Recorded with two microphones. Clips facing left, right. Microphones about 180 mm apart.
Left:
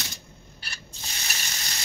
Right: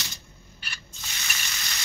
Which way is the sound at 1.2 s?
35° left (ahead or behind).